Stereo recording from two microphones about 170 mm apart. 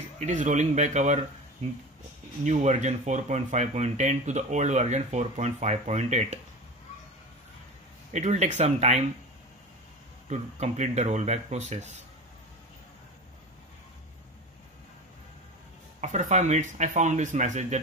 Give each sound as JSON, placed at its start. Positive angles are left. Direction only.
{"t": 0.2, "sound": "speech", "side_deg": -45}
{"t": 8.1, "sound": "speech", "side_deg": -40}
{"t": 10.2, "sound": "speech", "side_deg": -40}
{"t": 16.0, "sound": "speech", "side_deg": -45}